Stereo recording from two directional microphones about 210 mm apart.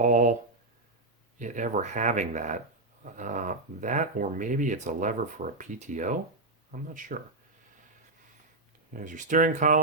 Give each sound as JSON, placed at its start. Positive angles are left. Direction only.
{"t": 0.0, "sound": "a sound", "side_deg": -35}
{"t": 1.4, "sound": "speech", "side_deg": -35}
{"t": 8.9, "sound": "speech", "side_deg": -40}